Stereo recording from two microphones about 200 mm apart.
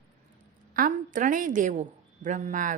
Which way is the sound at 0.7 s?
40° right (ahead or behind).